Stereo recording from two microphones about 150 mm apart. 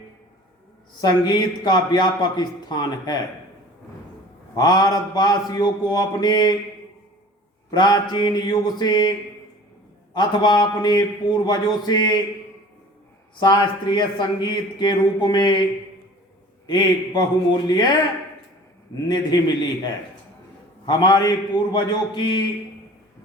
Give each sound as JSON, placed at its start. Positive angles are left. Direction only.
{"t": 1.0, "sound": "a man's voice", "side_deg": 30}
{"t": 4.5, "sound": "a man's voice", "side_deg": 25}
{"t": 7.7, "sound": "a man's voice", "side_deg": 25}
{"t": 10.2, "sound": "a man's voice", "side_deg": 30}
{"t": 13.4, "sound": "a man's voice", "side_deg": 30}
{"t": 16.6, "sound": "a man's voice", "side_deg": 25}
{"t": 19.0, "sound": "a man's voice", "side_deg": 30}
{"t": 20.8, "sound": "a man's voice", "side_deg": 30}